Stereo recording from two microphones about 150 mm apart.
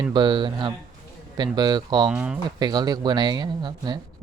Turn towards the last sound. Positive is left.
turn(degrees=-30)  # may be behind; listen again after turning